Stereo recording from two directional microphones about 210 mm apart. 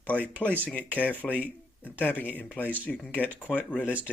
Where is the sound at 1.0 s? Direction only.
10° left (ahead or behind).